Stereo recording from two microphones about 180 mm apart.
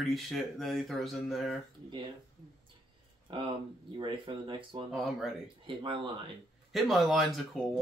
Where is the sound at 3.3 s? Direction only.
30° right (ahead or behind).